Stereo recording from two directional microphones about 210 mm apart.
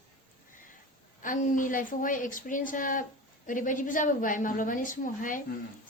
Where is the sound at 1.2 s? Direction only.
40° left (ahead or behind).